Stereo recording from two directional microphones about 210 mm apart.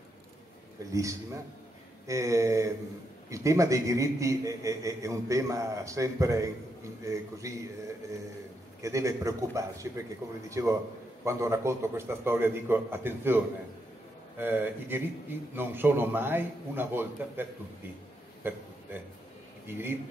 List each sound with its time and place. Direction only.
0.9 s a man's voice: 15° right (ahead or behind)
8.8 s a man's voice: 15° right (ahead or behind)
14.4 s a man's voice: 10° right (ahead or behind)